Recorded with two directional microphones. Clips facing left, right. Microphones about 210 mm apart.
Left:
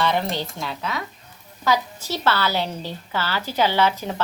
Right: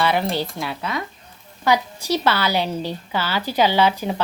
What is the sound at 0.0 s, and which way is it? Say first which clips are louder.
A woman's voice: right 2 dB; 5° right (ahead or behind).